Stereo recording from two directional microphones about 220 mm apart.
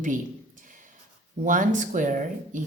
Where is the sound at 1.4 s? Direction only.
35° right (ahead or behind).